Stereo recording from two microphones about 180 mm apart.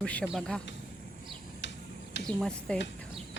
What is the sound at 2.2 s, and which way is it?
Speech, 5° left (ahead or behind).